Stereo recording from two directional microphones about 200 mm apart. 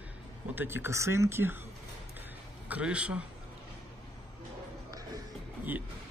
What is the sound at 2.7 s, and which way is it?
Speech, 5° right (ahead or behind).